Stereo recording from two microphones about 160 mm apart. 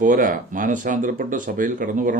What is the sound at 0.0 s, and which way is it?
Speech, 55° right (ahead or behind).